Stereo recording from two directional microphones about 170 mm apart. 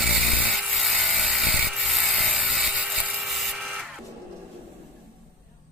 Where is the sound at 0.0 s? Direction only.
Centre (ahead or behind).